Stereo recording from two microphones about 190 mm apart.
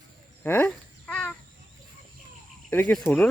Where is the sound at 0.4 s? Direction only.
10° left (ahead or behind).